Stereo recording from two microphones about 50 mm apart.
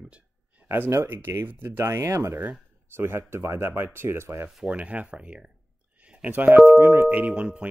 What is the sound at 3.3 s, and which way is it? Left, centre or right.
Speech, right.